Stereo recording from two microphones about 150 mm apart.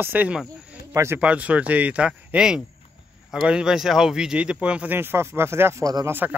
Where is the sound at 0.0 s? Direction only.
10° right (ahead or behind).